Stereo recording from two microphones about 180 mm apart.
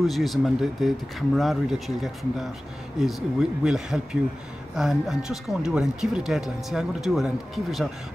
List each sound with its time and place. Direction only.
0.0 s speech: centre (ahead or behind)